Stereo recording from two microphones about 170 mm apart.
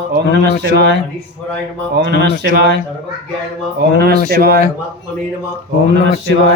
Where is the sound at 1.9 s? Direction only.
80° right.